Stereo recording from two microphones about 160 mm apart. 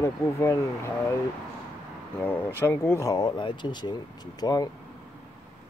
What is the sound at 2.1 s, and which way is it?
Speech, 10° left (ahead or behind).